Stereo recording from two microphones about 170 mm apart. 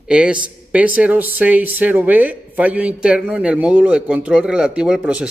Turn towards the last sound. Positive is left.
turn(degrees=-5)  # may be behind; listen again after turning